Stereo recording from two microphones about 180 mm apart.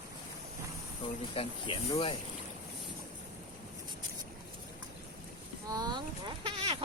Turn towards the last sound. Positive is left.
turn(degrees=-30)  # may be behind; listen again after turning